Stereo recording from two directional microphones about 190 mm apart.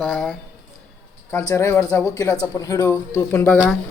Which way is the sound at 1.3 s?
15° left (ahead or behind).